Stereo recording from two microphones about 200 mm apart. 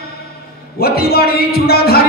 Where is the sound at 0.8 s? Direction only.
50° left (ahead or behind).